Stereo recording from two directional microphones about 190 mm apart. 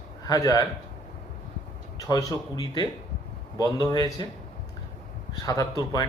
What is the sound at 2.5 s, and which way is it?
A man's voice, 20° left (ahead or behind).